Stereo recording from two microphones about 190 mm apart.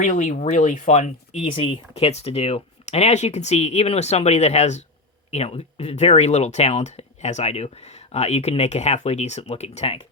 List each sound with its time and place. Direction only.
0.0 s speech: 45° left (ahead or behind)